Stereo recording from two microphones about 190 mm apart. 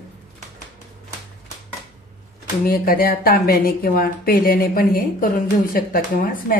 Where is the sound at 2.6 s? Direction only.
50° left (ahead or behind).